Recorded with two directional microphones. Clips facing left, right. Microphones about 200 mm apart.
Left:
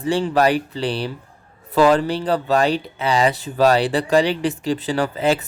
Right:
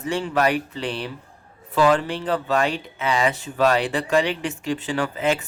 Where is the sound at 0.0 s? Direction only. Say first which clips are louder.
Left 4 dB; 30° left (ahead or behind).